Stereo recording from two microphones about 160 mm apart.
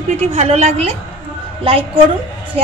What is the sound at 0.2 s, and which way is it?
A woman's voice, 45° right (ahead or behind).